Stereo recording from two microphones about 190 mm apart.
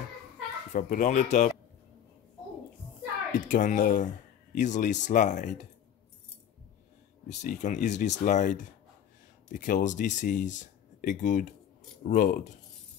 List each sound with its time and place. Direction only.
0.7 s speech: 40° left (ahead or behind)
3.3 s speech: 45° left (ahead or behind)
7.4 s speech: 40° left (ahead or behind)